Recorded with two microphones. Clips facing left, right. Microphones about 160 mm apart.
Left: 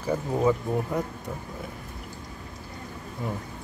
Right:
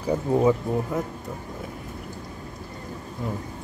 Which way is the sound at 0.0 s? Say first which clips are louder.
Right 3 dB; 15° right (ahead or behind).